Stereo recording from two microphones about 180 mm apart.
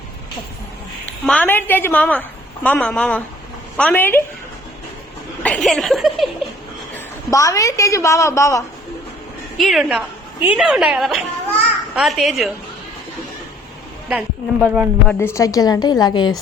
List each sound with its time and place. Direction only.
1.2 s a woman's voice: 5° left (ahead or behind)
5.4 s a woman's voice: 5° left (ahead or behind)
7.3 s a woman's voice: 20° left (ahead or behind)
9.6 s a woman's voice: centre (ahead or behind)
14.1 s speech: 10° right (ahead or behind)
15.0 s a woman's voice: 15° left (ahead or behind)